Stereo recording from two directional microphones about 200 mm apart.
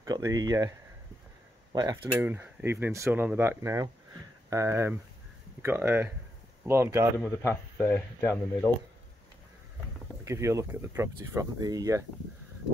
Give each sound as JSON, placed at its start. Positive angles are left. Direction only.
{"t": 0.0, "sound": "speech", "side_deg": -15}
{"t": 7.4, "sound": "speech", "side_deg": 5}
{"t": 10.2, "sound": "speech", "side_deg": -15}